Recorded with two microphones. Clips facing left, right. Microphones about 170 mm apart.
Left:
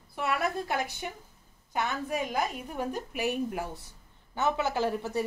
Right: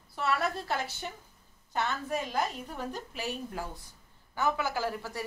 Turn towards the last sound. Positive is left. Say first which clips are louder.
# left 4 dB
turn(degrees=20)  # may be behind; listen again after turning